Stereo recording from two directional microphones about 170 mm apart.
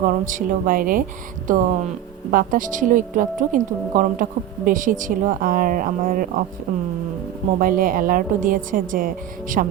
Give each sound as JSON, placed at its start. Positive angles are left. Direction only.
{"t": 0.0, "sound": "a woman's voice", "side_deg": -50}